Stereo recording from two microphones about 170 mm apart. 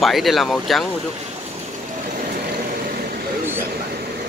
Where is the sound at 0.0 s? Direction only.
Centre (ahead or behind).